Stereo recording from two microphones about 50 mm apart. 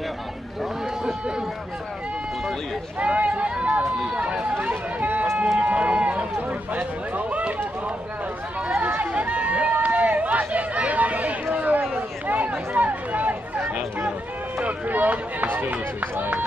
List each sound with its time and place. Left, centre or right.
3.0 s run: right
4.1 s speech: right
4.6 s a sound: right
5.6 s run: right
6.7 s speech: right
8.7 s chatter: right
12.3 s a sound: right
14.6 s speech: right